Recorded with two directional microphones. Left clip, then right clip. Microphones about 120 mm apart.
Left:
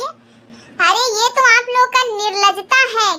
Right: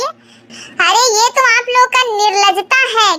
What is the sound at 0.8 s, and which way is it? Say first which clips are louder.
A child's voice: right 3 dB; 25° right (ahead or behind).